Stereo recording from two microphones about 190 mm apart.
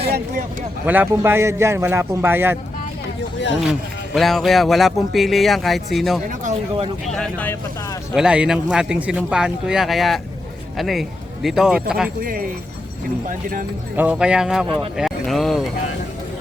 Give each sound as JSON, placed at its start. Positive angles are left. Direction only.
{"t": 0.9, "sound": "a man's voice", "side_deg": -10}
{"t": 3.7, "sound": "speech", "side_deg": 0}
{"t": 6.4, "sound": "speech", "side_deg": -30}
{"t": 7.1, "sound": "speech", "side_deg": 5}
{"t": 8.1, "sound": "speech", "side_deg": -5}
{"t": 12.2, "sound": "speech", "side_deg": -50}
{"t": 13.9, "sound": "speech", "side_deg": -5}